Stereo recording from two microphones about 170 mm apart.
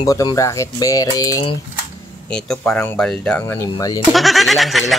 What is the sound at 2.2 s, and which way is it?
Speech, 5° left (ahead or behind).